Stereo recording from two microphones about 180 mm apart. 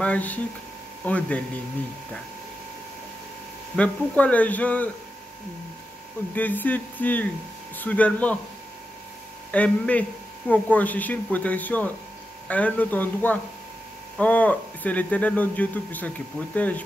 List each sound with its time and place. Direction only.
0.0 s speech: 10° left (ahead or behind)
3.7 s speech: 5° left (ahead or behind)
6.3 s speech: 10° left (ahead or behind)
9.5 s speech: 5° left (ahead or behind)